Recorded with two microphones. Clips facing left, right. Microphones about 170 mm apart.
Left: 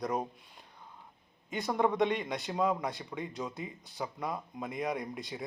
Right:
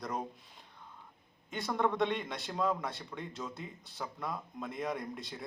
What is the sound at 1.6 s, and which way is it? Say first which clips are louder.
A man's voice: left 3 dB; 15° left (ahead or behind).